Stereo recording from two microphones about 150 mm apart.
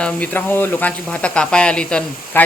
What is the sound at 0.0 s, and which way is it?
Speech, 10° left (ahead or behind).